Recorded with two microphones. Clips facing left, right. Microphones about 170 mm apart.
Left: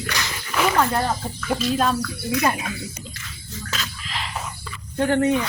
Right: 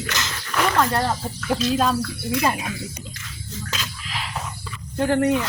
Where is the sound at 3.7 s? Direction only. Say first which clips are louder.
Left 3 dB; 10° right (ahead or behind).